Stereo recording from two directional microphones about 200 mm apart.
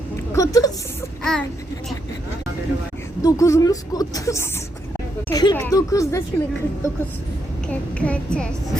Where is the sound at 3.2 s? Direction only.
15° left (ahead or behind).